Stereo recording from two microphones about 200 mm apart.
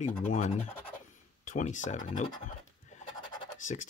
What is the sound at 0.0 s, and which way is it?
Speech, 35° left (ahead or behind).